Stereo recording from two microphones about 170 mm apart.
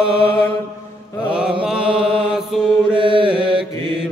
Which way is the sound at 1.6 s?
5° right (ahead or behind).